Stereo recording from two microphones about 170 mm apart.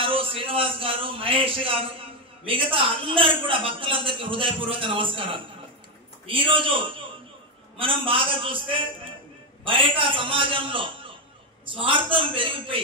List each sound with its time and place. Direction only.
0.0 s a man's voice: 30° right (ahead or behind)